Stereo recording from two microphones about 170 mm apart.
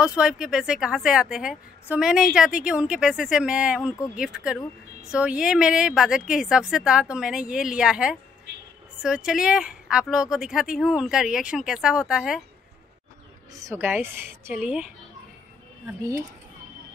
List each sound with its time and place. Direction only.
0.0 s a woman's voice: 5° right (ahead or behind)
8.5 s a sound: 85° right
9.0 s a woman's voice: 5° right (ahead or behind)
13.5 s speech: 20° right (ahead or behind)